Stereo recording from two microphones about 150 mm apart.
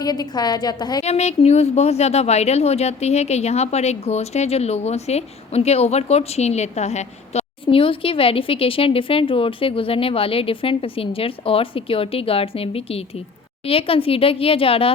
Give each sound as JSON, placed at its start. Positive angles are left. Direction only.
{"t": 0.0, "sound": "a woman's voice", "side_deg": 25}
{"t": 1.0, "sound": "speech", "side_deg": 45}